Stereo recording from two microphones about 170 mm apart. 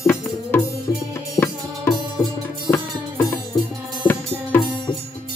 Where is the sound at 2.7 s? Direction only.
15° left (ahead or behind).